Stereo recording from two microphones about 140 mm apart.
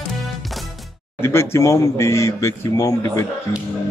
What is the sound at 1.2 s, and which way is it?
Speech, 20° left (ahead or behind).